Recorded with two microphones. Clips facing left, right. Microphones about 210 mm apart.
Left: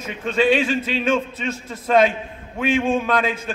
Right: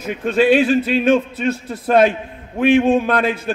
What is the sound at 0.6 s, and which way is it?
Speech, 65° right (ahead or behind).